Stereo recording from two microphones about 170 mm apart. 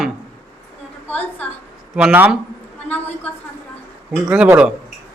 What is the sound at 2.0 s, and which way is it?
Speech, 10° right (ahead or behind).